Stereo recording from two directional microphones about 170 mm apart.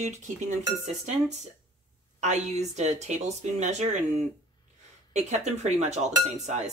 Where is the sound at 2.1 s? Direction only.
45° right (ahead or behind).